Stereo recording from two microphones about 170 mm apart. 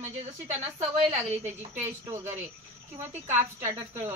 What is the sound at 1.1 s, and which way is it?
Speech, 40° right (ahead or behind).